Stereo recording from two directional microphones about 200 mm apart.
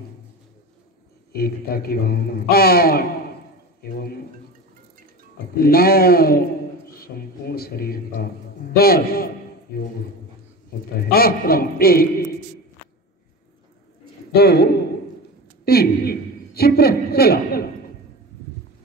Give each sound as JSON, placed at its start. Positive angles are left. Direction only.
{"t": 1.3, "sound": "a man's voice", "side_deg": 50}
{"t": 5.6, "sound": "a man's voice", "side_deg": 50}
{"t": 11.0, "sound": "a man's voice", "side_deg": 50}
{"t": 14.3, "sound": "a man's voice", "side_deg": 55}